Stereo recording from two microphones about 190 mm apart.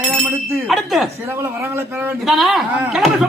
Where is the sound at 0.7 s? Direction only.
Centre (ahead or behind).